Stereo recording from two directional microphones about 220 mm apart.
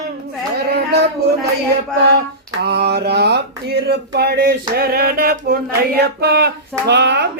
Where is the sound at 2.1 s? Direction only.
50° right (ahead or behind).